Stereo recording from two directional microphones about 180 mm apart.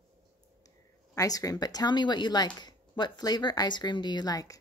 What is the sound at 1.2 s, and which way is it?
Speech, 20° left (ahead or behind).